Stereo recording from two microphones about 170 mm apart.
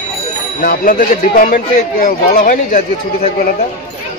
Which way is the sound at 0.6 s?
55° left (ahead or behind).